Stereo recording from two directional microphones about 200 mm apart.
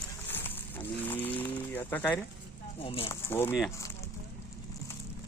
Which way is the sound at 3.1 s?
10° left (ahead or behind).